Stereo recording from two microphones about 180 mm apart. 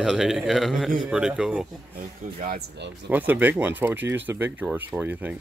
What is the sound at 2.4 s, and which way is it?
Speech, 50° right (ahead or behind).